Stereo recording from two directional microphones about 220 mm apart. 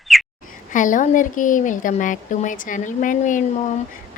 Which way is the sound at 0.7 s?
35° left (ahead or behind).